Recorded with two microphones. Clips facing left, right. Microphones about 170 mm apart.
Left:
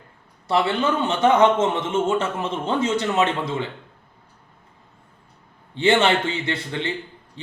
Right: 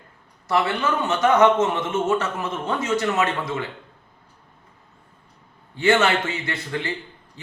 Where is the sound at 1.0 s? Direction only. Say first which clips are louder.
Even; 25° left (ahead or behind).